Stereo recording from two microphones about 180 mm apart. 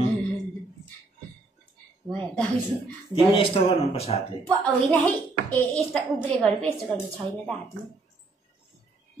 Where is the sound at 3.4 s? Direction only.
30° left (ahead or behind).